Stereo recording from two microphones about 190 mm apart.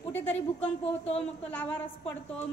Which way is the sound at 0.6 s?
30° left (ahead or behind).